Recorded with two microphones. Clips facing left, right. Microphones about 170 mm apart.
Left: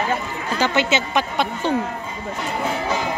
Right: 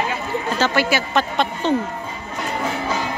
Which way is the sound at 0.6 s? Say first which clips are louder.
Left 1 dB; 20° left (ahead or behind).